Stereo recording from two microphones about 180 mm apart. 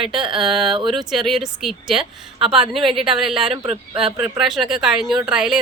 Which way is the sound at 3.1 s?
Centre (ahead or behind).